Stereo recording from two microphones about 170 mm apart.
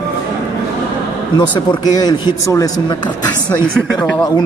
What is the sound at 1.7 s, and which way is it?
Speech, 25° left (ahead or behind).